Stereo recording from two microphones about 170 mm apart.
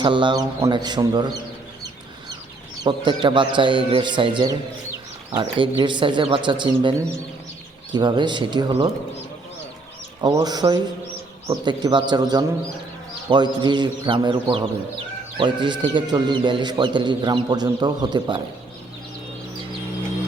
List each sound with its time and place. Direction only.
0.0 s a man's voice: 30° right (ahead or behind)
2.8 s a man's voice: 25° right (ahead or behind)
7.9 s a man's voice: 25° right (ahead or behind)
10.2 s a man's voice: 25° right (ahead or behind)